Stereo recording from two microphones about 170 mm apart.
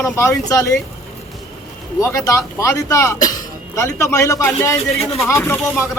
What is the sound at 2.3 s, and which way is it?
Speech, 20° left (ahead or behind).